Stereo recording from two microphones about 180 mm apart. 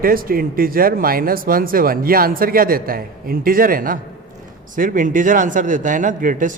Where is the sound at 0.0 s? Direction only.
55° right (ahead or behind).